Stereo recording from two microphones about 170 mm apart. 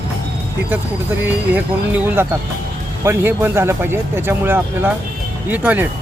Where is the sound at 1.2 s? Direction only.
10° right (ahead or behind).